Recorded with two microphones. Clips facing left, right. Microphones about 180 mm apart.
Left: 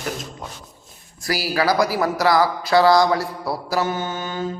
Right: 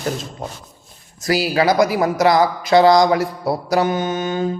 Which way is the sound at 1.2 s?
20° right (ahead or behind).